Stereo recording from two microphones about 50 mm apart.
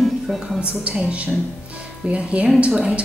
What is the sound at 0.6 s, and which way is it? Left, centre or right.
Speech, right.